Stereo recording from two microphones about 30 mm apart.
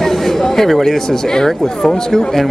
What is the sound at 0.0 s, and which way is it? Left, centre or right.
Speech, centre.